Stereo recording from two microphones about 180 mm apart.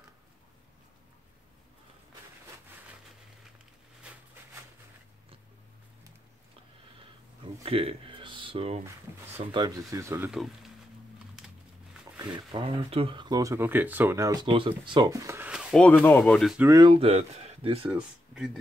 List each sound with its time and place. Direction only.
7.6 s a sound: 30° right (ahead or behind)
9.5 s speech: 25° right (ahead or behind)
12.4 s speech: 25° right (ahead or behind); by 15.8 s 5° right (ahead or behind)
16.1 s speech: 10° left (ahead or behind)
16.6 s speech: 20° right (ahead or behind)
17.8 s speech: 5° right (ahead or behind)